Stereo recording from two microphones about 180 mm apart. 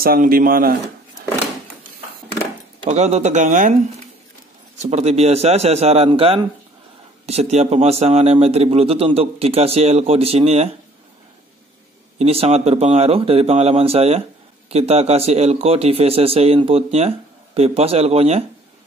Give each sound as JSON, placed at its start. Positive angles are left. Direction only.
{"t": 0.0, "sound": "speech", "side_deg": -55}
{"t": 2.9, "sound": "speech", "side_deg": -40}
{"t": 4.7, "sound": "speech", "side_deg": -35}
{"t": 12.2, "sound": "speech", "side_deg": -35}